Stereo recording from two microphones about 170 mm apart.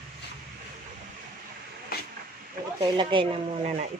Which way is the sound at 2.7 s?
30° right (ahead or behind).